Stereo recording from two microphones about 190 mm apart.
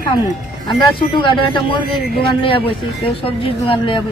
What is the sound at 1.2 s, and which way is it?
Speech, 25° left (ahead or behind).